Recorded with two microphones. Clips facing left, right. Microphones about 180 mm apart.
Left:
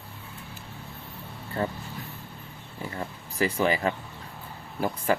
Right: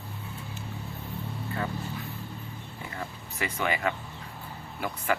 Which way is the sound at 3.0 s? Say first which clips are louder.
Left 7 dB; 35° left (ahead or behind).